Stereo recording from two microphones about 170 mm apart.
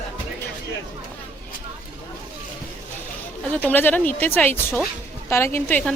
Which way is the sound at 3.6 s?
10° left (ahead or behind).